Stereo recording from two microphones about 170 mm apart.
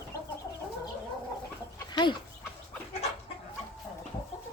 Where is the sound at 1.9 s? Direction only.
25° left (ahead or behind).